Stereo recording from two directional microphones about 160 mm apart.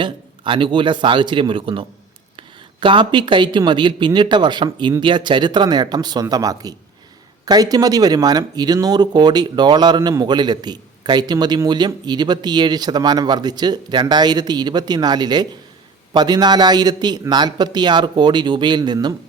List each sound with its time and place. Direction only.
0.0 s speech: 30° right (ahead or behind)